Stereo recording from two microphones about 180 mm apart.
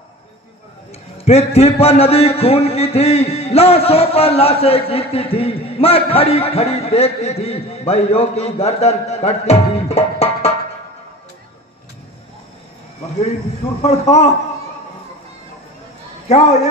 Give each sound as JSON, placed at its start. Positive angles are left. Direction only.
{"t": 1.1, "sound": "a man's voice", "side_deg": 35}
{"t": 13.8, "sound": "a man's voice", "side_deg": 35}